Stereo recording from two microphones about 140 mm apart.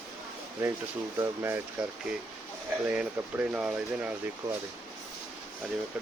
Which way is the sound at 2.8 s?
10° right (ahead or behind).